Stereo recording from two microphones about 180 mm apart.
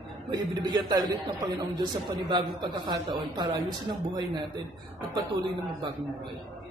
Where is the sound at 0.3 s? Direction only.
25° right (ahead or behind).